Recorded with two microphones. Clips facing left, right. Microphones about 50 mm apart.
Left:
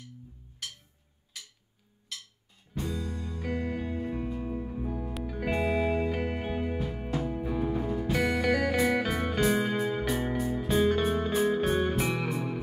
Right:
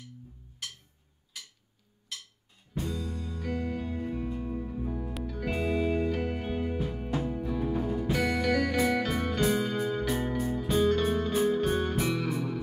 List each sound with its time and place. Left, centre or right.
2.8 s music: centre